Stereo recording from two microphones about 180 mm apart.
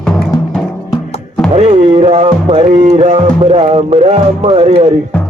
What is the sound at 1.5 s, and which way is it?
Music, 35° right (ahead or behind).